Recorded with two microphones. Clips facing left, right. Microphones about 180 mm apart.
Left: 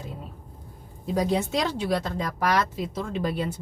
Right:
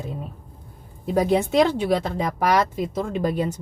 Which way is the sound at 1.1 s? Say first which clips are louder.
Right 5 dB; 60° right (ahead or behind).